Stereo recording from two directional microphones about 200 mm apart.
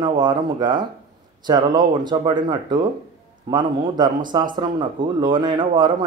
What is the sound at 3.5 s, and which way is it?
Speech, 20° right (ahead or behind).